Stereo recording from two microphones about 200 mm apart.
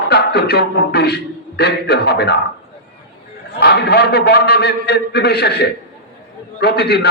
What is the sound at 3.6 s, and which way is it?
A man's voice, 55° left (ahead or behind).